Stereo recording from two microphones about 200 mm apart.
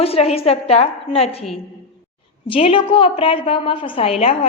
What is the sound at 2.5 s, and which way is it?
A woman's voice, 25° left (ahead or behind).